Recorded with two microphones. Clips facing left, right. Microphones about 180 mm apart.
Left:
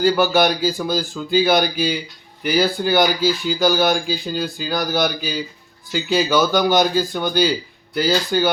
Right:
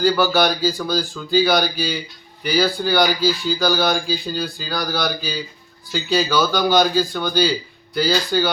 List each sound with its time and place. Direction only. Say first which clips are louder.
0.0 s speech: left 1 dB; 15° left (ahead or behind)